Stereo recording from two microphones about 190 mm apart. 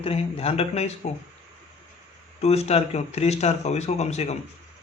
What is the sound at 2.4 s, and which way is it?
Speech, 35° left (ahead or behind).